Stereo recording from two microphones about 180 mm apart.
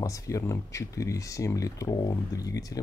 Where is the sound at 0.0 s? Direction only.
20° left (ahead or behind).